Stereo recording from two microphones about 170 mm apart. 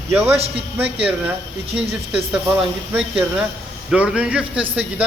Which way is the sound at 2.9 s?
10° right (ahead or behind).